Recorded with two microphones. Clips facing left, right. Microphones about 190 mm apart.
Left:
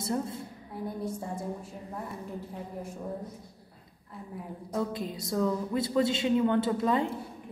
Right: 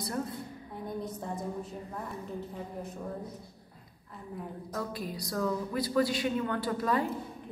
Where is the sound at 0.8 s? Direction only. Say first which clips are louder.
Left 2 dB; 10° left (ahead or behind).